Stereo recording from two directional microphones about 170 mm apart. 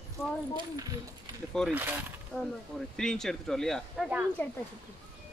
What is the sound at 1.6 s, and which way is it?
Speech, 5° left (ahead or behind).